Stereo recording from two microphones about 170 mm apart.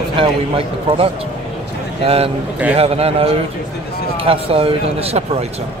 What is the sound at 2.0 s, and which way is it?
Speech, 35° right (ahead or behind).